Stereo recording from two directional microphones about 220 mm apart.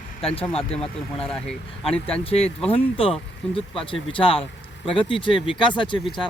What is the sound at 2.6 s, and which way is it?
Speech, 25° left (ahead or behind).